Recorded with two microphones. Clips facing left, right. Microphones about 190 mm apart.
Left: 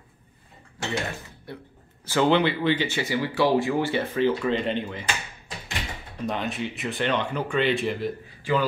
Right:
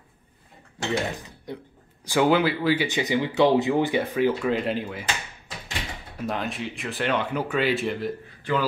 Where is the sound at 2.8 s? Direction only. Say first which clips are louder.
Right 2 dB; 15° right (ahead or behind).